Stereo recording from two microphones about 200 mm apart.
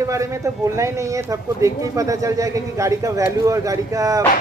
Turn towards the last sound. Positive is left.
turn(degrees=-15)  # may be behind; listen again after turning